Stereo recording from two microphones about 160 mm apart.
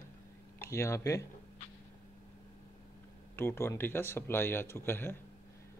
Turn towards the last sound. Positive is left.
turn(degrees=15)  # may be behind; listen again after turning